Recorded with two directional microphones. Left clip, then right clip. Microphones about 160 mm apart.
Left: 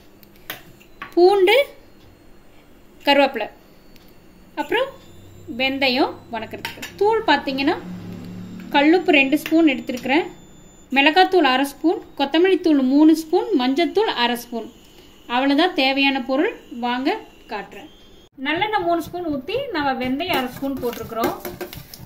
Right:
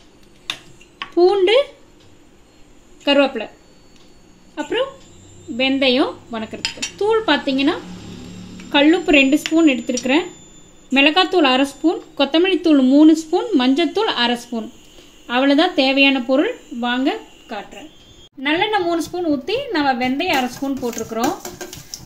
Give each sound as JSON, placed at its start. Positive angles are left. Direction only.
{"t": 1.1, "sound": "speech", "side_deg": -40}
{"t": 3.0, "sound": "a sound", "side_deg": -45}
{"t": 4.6, "sound": "speech", "side_deg": -40}
{"t": 8.7, "sound": "speech", "side_deg": -50}